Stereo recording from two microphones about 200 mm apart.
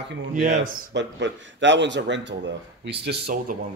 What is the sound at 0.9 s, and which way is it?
Speech, 65° right (ahead or behind).